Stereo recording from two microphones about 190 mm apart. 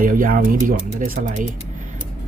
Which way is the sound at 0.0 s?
45° right (ahead or behind).